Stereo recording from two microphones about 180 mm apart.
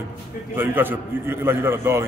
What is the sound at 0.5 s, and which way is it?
A man's voice, 10° right (ahead or behind).